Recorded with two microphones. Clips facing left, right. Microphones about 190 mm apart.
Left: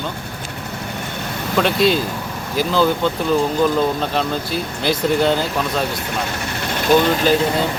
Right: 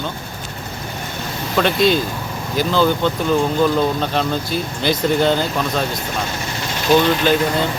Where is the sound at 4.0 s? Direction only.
Centre (ahead or behind).